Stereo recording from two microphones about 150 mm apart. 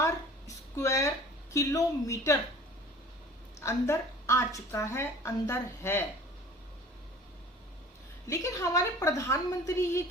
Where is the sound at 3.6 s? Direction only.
20° left (ahead or behind).